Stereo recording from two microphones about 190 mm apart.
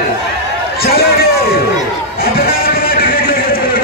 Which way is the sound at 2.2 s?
50° left (ahead or behind).